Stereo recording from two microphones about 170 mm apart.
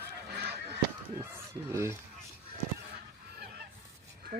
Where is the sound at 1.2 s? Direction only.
15° right (ahead or behind).